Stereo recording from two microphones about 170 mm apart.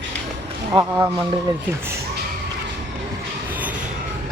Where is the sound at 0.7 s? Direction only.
15° right (ahead or behind).